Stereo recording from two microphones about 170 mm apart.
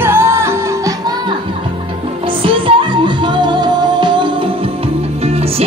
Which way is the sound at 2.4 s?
30° right (ahead or behind).